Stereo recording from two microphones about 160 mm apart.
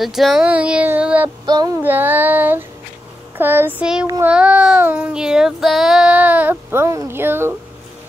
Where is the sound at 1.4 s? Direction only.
25° right (ahead or behind).